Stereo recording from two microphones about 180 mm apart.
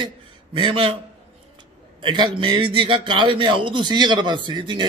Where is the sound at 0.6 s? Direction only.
30° right (ahead or behind).